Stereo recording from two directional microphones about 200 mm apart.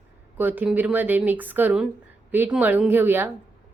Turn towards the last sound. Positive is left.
turn(degrees=-10)  # may be behind; listen again after turning